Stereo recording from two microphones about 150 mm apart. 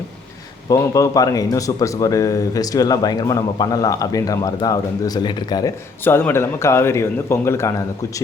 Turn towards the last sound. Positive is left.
turn(degrees=20)  # may be behind; listen again after turning